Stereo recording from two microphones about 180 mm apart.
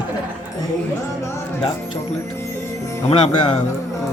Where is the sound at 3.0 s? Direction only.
30° left (ahead or behind).